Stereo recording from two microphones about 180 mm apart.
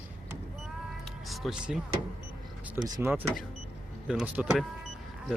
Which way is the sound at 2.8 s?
20° right (ahead or behind).